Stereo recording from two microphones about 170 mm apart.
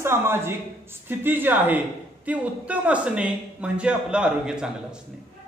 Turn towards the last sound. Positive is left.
turn(degrees=-5)  # may be behind; listen again after turning